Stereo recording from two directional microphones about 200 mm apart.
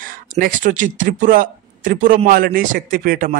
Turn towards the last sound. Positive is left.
turn(degrees=-45)  # may be behind; listen again after turning